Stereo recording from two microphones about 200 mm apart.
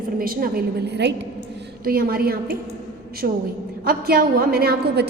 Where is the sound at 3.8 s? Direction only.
50° right (ahead or behind).